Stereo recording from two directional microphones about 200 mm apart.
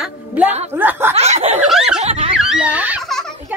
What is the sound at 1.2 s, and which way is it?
Snicker, 30° right (ahead or behind).